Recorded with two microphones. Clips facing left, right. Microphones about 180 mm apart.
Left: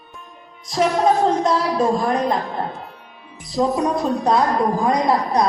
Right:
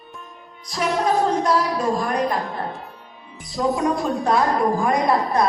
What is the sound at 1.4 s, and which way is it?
Speech, 25° left (ahead or behind).